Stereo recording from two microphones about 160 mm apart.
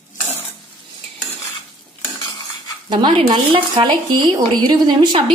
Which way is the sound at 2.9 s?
30° right (ahead or behind).